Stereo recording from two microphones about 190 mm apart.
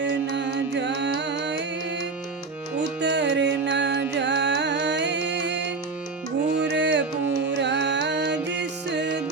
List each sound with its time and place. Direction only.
0.0 s music: 70° right (ahead or behind)
3.0 s music: 65° right (ahead or behind)